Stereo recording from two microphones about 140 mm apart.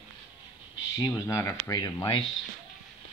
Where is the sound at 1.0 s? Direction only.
20° left (ahead or behind).